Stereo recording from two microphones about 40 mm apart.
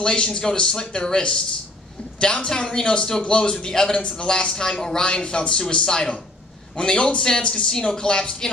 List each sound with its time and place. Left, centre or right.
0.0 s speech: left